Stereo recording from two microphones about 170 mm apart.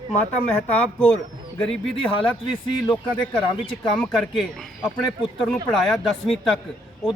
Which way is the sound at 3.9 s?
5° left (ahead or behind).